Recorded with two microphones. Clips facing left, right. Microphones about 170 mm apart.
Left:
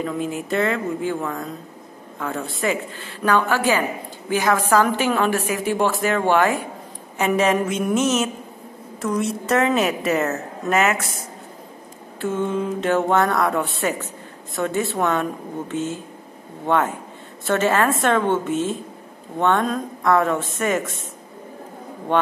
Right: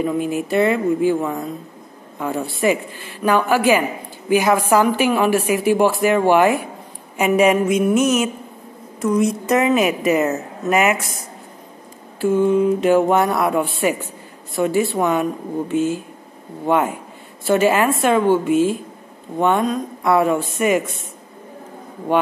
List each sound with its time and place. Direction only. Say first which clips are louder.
0.0 s a woman's voice: right 5 dB; 15° right (ahead or behind)
12.2 s a woman's voice: right 7 dB; 5° right (ahead or behind)
20.0 s a woman's voice: right 2 dB; 10° right (ahead or behind)